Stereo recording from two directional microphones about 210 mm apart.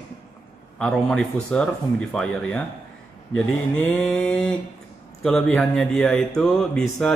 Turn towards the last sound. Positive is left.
turn(degrees=5)  # may be behind; listen again after turning